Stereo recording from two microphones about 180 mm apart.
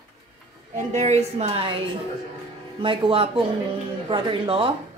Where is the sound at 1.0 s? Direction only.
35° right (ahead or behind).